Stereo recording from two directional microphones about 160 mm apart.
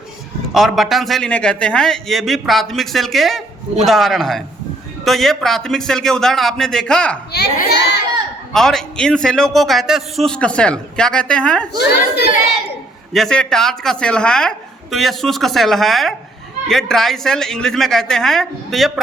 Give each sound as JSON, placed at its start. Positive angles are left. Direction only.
{"t": 0.5, "sound": "a man's voice", "side_deg": 0}
{"t": 7.3, "sound": "a child's voice", "side_deg": 90}
{"t": 8.5, "sound": "a man's voice", "side_deg": 5}
{"t": 13.1, "sound": "a man's voice", "side_deg": 5}